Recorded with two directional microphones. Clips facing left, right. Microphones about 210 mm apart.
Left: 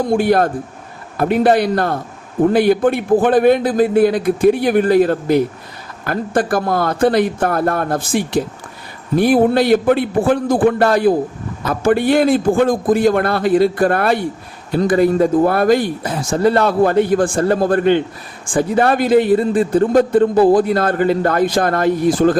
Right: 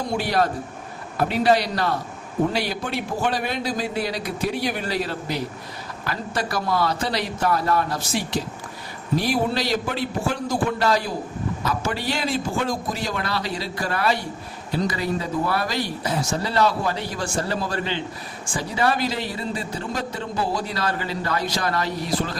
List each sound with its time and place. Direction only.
0.1 s a man's voice: 50° left (ahead or behind)